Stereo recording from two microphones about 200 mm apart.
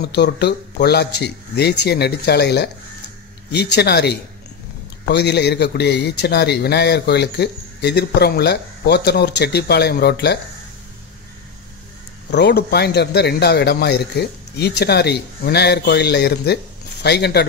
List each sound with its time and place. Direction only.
0.0 s a man's voice: 55° left (ahead or behind)
12.3 s a man's voice: 55° left (ahead or behind)